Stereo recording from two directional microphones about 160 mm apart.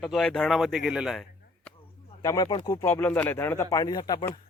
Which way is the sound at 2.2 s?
20° left (ahead or behind).